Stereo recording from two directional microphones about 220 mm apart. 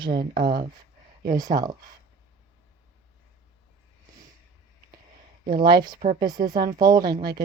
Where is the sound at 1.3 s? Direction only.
15° right (ahead or behind).